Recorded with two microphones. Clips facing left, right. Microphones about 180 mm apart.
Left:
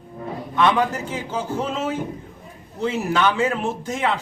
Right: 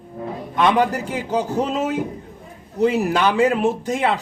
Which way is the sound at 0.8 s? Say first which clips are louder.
Right 3 dB; 15° right (ahead or behind).